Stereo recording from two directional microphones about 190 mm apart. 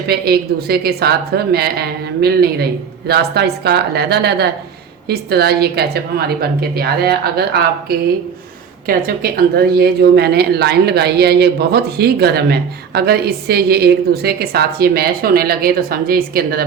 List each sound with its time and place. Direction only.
0.1 s speech: 55° right (ahead or behind)